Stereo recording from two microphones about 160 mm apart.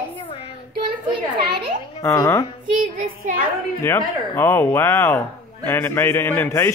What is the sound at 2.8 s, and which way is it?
Speech, 55° right (ahead or behind).